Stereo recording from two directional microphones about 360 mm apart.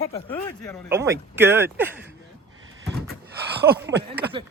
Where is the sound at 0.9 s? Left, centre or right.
Centre.